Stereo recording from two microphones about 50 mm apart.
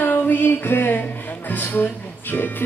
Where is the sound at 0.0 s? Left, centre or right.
Left.